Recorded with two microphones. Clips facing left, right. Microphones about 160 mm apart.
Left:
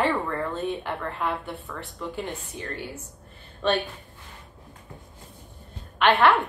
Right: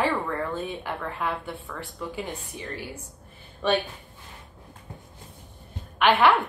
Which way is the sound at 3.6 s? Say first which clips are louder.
Even; 10° right (ahead or behind).